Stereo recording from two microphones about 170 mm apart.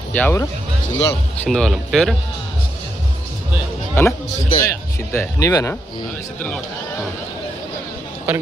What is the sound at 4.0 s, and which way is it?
Speech, 15° left (ahead or behind).